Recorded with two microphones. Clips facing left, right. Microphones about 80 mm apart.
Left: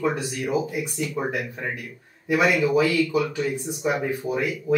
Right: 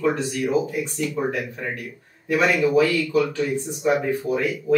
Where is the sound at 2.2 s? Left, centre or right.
Centre.